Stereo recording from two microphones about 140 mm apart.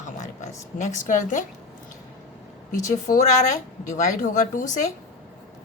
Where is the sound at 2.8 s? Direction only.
65° left (ahead or behind).